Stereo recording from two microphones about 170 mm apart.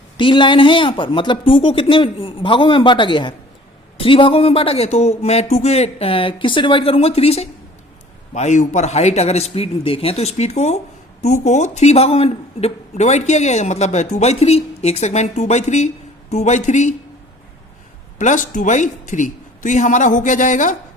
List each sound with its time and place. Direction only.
0.2 s a man's voice: 30° left (ahead or behind); by 16.9 s 45° left (ahead or behind)
18.2 s a man's voice: 45° left (ahead or behind)